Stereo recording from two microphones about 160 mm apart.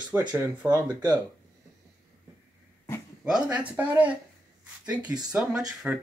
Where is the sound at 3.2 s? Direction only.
5° right (ahead or behind).